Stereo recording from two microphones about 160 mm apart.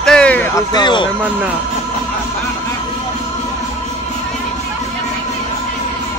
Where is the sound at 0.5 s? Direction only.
25° left (ahead or behind).